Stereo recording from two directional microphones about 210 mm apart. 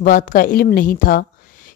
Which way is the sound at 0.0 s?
40° left (ahead or behind).